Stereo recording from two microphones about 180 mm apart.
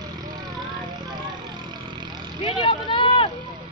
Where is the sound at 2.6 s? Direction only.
30° left (ahead or behind).